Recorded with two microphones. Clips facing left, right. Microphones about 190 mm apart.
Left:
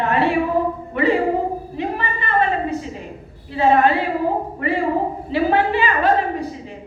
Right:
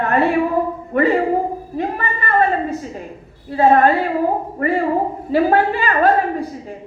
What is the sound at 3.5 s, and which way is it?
A woman's voice, 45° right (ahead or behind).